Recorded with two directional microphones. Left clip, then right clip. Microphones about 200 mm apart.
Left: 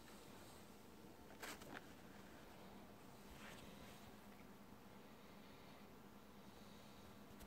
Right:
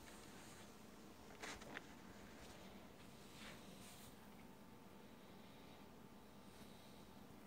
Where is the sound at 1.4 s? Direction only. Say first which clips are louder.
Right 2 dB; 40° left (ahead or behind).